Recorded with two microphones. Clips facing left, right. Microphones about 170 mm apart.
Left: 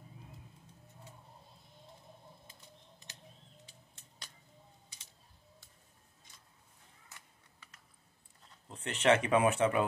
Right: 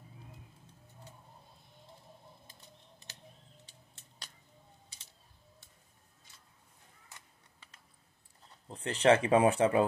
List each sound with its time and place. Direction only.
8.6 s speech: 30° right (ahead or behind)